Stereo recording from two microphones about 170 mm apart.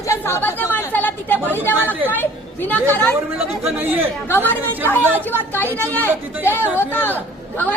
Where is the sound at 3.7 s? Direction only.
10° right (ahead or behind).